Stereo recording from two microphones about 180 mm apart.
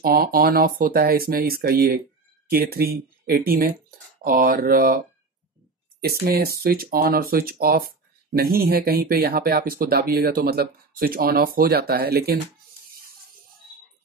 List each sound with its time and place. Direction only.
0.0 s speech: 55° right (ahead or behind)